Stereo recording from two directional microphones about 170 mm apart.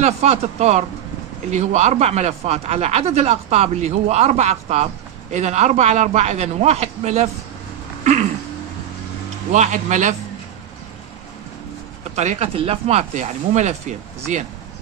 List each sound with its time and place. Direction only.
0.0 s speech: 40° right (ahead or behind)
8.0 s a sound: 45° right (ahead or behind)
9.5 s speech: 45° right (ahead or behind)
12.2 s speech: 40° right (ahead or behind)